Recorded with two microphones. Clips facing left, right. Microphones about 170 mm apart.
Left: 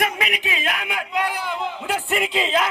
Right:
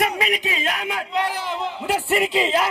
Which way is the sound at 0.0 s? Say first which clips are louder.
Right 2 dB; 30° right (ahead or behind).